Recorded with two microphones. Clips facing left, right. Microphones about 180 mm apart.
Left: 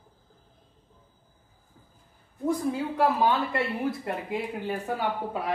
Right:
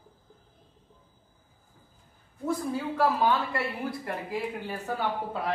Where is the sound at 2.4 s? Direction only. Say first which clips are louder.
Left 3 dB; 15° left (ahead or behind).